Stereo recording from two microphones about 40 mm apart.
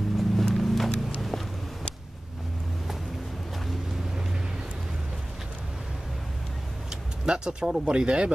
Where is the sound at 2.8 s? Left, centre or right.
Centre.